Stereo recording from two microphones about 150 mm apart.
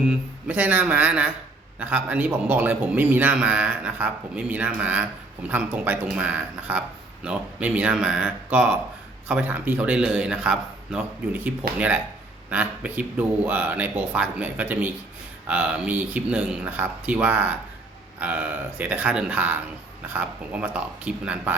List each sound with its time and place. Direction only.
0.0 s a man's voice: 10° right (ahead or behind)